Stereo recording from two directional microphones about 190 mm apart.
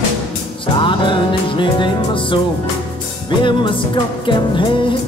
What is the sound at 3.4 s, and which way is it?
Music, 25° left (ahead or behind).